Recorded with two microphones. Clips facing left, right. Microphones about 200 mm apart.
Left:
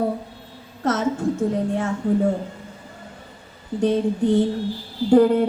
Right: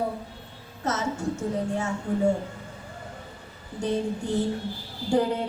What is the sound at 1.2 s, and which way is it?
Speech, 90° left.